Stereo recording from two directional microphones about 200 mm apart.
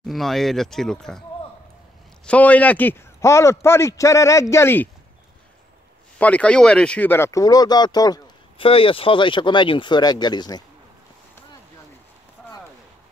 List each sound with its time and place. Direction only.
0.0 s speech: centre (ahead or behind)
2.2 s a man's voice: 5° left (ahead or behind)
6.1 s speech: 5° left (ahead or behind)